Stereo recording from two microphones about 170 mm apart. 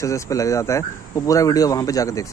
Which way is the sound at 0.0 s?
20° left (ahead or behind).